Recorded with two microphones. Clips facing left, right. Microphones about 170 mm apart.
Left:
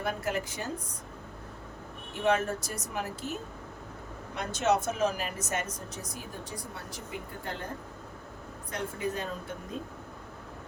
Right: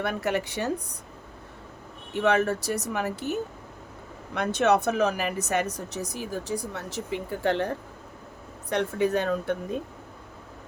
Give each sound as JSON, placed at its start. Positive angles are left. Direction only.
{"t": 0.0, "sound": "speech", "side_deg": -70}
{"t": 2.2, "sound": "speech", "side_deg": -70}